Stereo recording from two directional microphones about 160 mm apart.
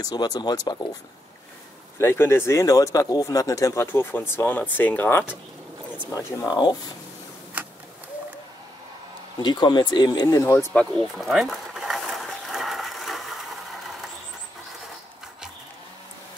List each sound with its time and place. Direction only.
0.0 s speech: 25° left (ahead or behind)
2.0 s speech: 15° left (ahead or behind)
5.9 s speech: 25° left (ahead or behind)
9.4 s a sound: 30° left (ahead or behind); by 13.4 s centre (ahead or behind)